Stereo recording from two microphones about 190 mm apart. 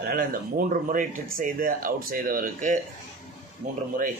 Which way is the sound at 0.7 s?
45° right (ahead or behind).